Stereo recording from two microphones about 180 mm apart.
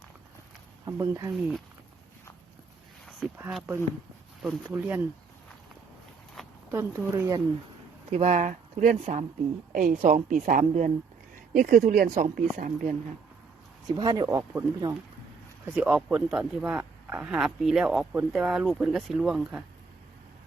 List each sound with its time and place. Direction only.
0.9 s speech: 20° right (ahead or behind)
3.2 s a man's voice: centre (ahead or behind)
4.4 s speech: 10° right (ahead or behind)
6.7 s speech: 15° right (ahead or behind)
8.1 s speech: 40° right (ahead or behind)
13.8 s speech: 20° right (ahead or behind)
15.6 s a man's voice: 5° right (ahead or behind)